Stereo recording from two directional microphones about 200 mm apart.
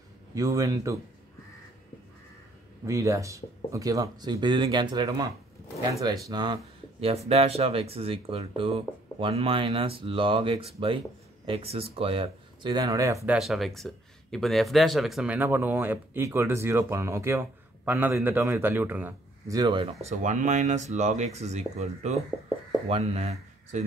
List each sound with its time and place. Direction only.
0.3 s speech: 15° right (ahead or behind)
2.9 s speech: 15° right (ahead or behind)
13.4 s speech: centre (ahead or behind); by 23.8 s 30° right (ahead or behind)